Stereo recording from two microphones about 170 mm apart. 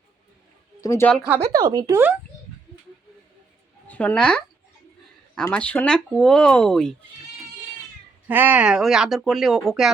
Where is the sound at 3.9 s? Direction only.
10° left (ahead or behind).